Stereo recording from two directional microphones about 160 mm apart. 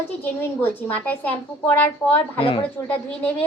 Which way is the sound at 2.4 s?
35° left (ahead or behind).